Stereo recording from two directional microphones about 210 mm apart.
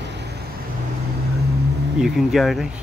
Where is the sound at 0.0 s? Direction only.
55° right (ahead or behind).